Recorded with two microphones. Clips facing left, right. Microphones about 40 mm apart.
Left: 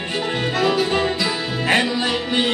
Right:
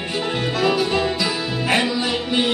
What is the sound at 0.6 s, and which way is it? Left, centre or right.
Music, centre.